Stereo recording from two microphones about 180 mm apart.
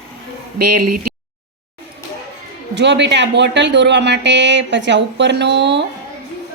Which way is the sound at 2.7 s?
75° right (ahead or behind).